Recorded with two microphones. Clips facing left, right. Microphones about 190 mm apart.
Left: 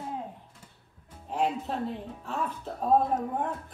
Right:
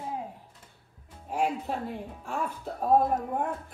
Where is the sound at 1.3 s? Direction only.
10° right (ahead or behind).